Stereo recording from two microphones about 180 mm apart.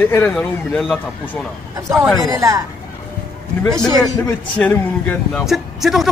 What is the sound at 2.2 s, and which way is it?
Speech, 20° right (ahead or behind).